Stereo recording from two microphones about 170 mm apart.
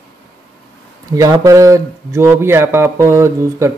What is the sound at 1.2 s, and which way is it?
Speech, 20° right (ahead or behind).